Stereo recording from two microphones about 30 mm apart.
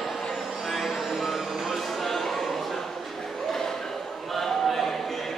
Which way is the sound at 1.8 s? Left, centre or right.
Centre.